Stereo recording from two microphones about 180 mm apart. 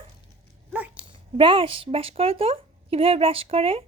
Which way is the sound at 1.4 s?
30° right (ahead or behind).